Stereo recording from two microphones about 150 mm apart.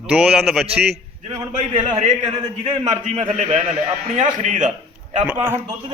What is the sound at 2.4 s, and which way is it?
Speech, 25° right (ahead or behind).